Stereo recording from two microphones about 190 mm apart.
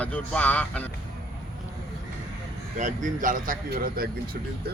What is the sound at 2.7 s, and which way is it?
A man's voice, 40° right (ahead or behind).